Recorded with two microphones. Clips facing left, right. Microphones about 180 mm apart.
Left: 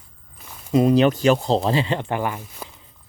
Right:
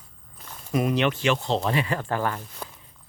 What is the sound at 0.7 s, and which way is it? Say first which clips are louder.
Speech: left 7 dB; 30° left (ahead or behind).